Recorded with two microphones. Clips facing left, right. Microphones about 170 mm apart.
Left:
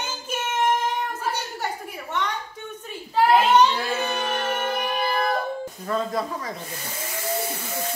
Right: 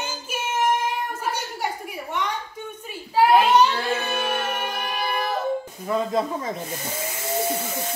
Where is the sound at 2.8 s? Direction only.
10° right (ahead or behind).